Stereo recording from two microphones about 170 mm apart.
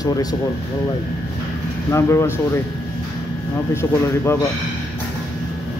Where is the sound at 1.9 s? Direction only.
15° left (ahead or behind).